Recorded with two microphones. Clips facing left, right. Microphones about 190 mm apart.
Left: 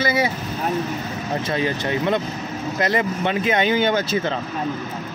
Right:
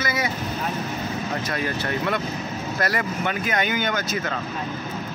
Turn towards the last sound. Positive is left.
turn(degrees=25)  # may be behind; listen again after turning